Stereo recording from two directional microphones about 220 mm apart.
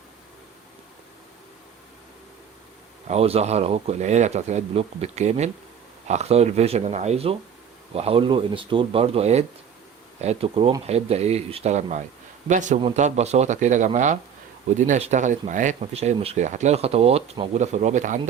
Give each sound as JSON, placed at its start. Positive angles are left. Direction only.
{"t": 3.1, "sound": "speech", "side_deg": -25}